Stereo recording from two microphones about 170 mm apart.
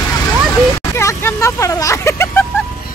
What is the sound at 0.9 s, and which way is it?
Speech, 15° left (ahead or behind).